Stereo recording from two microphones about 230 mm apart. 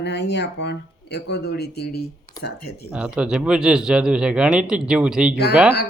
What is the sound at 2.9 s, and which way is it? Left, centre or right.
Speech, centre.